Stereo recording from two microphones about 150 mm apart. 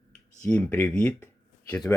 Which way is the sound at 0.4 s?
10° left (ahead or behind).